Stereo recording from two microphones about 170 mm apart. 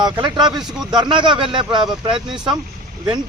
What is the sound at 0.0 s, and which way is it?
Speech, 25° right (ahead or behind).